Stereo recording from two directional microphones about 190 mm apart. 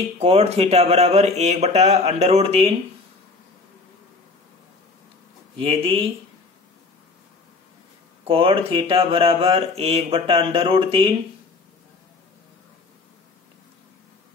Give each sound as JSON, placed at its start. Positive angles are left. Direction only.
{"t": 0.2, "sound": "speech", "side_deg": -30}
{"t": 5.6, "sound": "speech", "side_deg": -30}
{"t": 8.3, "sound": "speech", "side_deg": -30}